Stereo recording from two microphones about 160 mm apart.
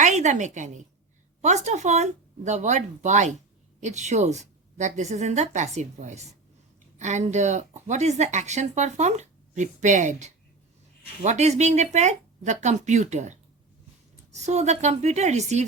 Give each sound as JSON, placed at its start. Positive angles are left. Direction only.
{"t": 0.0, "sound": "a woman's voice", "side_deg": -45}
{"t": 14.3, "sound": "speech", "side_deg": -45}